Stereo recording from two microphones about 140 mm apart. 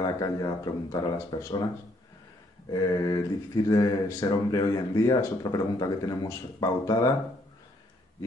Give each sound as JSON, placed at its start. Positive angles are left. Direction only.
{"t": 0.0, "sound": "speech", "side_deg": 25}
{"t": 2.7, "sound": "speech", "side_deg": 30}